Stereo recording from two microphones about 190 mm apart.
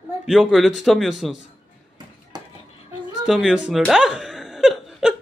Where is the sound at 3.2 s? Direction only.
5° right (ahead or behind).